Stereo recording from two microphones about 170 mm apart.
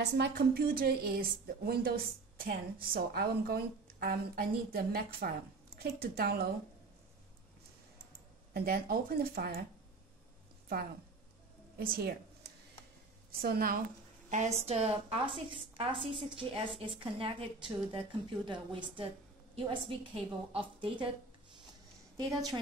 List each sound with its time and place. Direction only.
0.0 s a woman's voice: 70° right (ahead or behind)
8.5 s a woman's voice: 60° right (ahead or behind)
11.8 s a woman's voice: 65° right (ahead or behind)
14.3 s a woman's voice: 40° right (ahead or behind)